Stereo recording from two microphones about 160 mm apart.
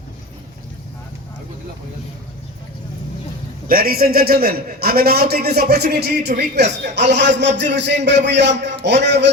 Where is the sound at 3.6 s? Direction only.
70° right (ahead or behind).